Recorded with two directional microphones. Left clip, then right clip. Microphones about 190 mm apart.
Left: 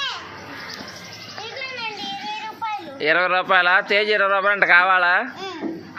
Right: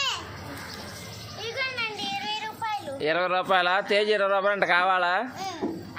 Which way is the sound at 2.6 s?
5° right (ahead or behind).